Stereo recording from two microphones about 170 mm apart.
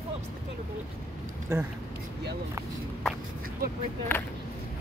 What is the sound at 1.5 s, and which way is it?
Speech, 15° right (ahead or behind).